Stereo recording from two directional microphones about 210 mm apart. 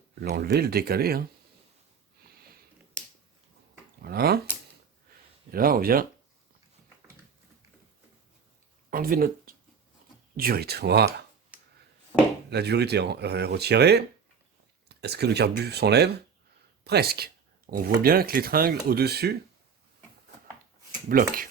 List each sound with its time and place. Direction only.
0.2 s speech: 50° right (ahead or behind)
4.0 s speech: 45° right (ahead or behind)
5.5 s speech: 45° right (ahead or behind)
8.9 s speech: 45° right (ahead or behind)
12.5 s speech: 50° right (ahead or behind)
21.1 s speech: 40° right (ahead or behind)